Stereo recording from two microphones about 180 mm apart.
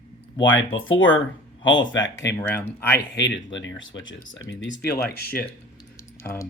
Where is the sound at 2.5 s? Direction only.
10° left (ahead or behind).